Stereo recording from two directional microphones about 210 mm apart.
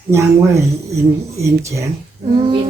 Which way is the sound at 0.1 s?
15° right (ahead or behind).